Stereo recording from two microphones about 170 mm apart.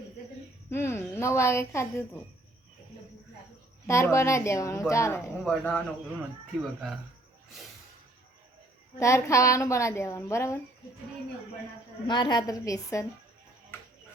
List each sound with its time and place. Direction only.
0.7 s a woman's voice: 15° left (ahead or behind)
3.8 s a woman's voice: 15° left (ahead or behind)
5.4 s speech: 5° left (ahead or behind)
9.0 s a woman's voice: 15° left (ahead or behind)
12.0 s a woman's voice: 25° left (ahead or behind)